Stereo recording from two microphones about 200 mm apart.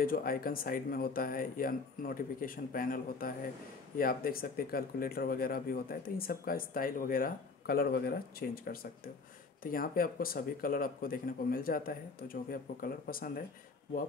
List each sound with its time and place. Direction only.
0.0 s speech: 45° left (ahead or behind)